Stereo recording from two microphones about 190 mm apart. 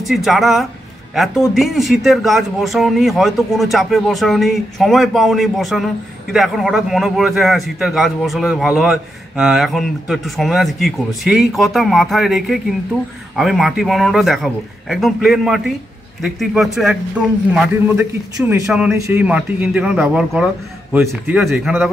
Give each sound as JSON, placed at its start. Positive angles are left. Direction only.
{"t": 0.0, "sound": "a man's voice", "side_deg": 0}
{"t": 18.5, "sound": "a man's voice", "side_deg": -5}
{"t": 18.9, "sound": "speech", "side_deg": -15}
{"t": 19.2, "sound": "a man's voice", "side_deg": -5}